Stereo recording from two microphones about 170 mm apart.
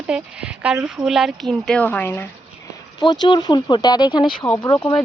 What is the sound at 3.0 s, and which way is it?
Speech, 25° left (ahead or behind).